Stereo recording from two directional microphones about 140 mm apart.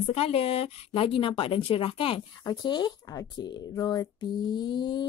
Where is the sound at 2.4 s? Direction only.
30° left (ahead or behind).